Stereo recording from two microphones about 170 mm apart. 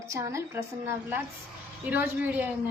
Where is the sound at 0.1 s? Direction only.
15° right (ahead or behind).